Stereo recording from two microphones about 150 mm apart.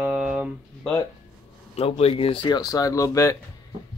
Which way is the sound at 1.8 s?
40° left (ahead or behind).